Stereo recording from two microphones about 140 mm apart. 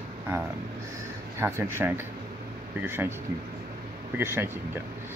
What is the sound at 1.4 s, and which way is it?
Speech, 15° right (ahead or behind).